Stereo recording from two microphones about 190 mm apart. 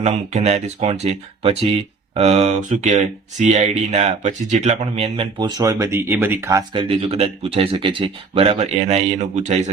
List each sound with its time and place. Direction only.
0.0 s speech: 35° right (ahead or behind)